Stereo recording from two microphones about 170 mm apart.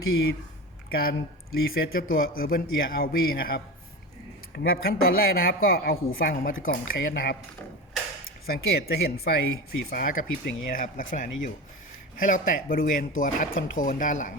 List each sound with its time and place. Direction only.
0.9 s a woman's voice: 65° left (ahead or behind)
8.4 s a woman's voice: 65° left (ahead or behind); by 14.3 s 50° left (ahead or behind)